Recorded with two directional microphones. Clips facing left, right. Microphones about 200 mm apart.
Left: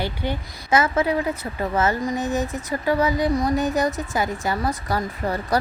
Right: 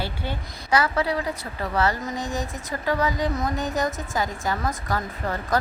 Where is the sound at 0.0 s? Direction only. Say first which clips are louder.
Left 4 dB; 20° left (ahead or behind).